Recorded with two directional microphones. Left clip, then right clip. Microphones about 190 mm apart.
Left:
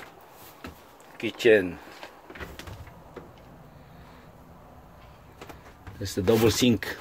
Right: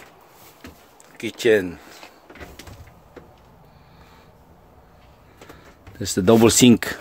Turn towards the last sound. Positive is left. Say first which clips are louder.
# right 8 dB
turn(degrees=-40)  # may be behind; listen again after turning